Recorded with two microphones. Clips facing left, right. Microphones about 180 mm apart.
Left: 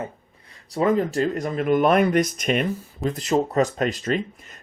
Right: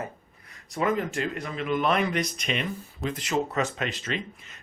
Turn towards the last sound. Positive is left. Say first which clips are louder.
# left 8 dB
turn(degrees=45)  # may be behind; listen again after turning